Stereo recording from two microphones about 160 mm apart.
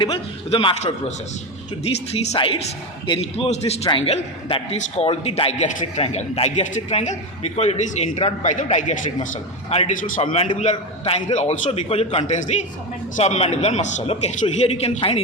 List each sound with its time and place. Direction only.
0.0 s a man's voice: 35° left (ahead or behind)